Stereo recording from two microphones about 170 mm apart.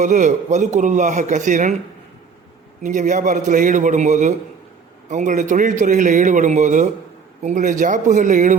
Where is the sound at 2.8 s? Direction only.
50° right (ahead or behind).